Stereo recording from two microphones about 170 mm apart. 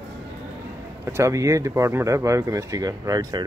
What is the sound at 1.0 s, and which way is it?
Speech, 15° right (ahead or behind).